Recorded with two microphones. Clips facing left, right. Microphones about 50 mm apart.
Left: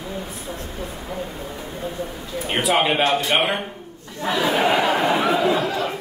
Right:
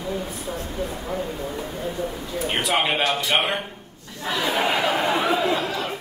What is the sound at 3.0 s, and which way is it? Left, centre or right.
Speech, left.